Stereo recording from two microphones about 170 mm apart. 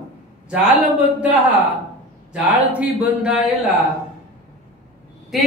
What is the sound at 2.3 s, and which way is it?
A man's voice, 5° right (ahead or behind).